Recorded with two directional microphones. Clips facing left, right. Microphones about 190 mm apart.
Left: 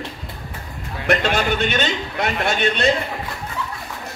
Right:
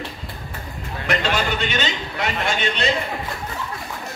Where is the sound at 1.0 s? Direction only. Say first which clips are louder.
Left 3 dB; 55° left (ahead or behind).